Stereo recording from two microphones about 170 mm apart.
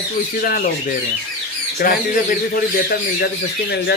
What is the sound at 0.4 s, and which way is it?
Speech, 60° left (ahead or behind).